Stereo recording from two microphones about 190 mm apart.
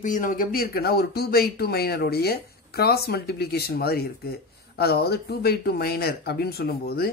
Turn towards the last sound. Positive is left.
turn(degrees=55)  # may be behind; listen again after turning